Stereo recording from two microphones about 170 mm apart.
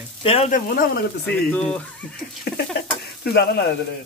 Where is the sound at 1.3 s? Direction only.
5° left (ahead or behind).